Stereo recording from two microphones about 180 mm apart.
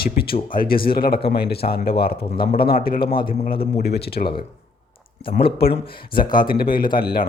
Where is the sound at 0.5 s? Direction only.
55° left (ahead or behind).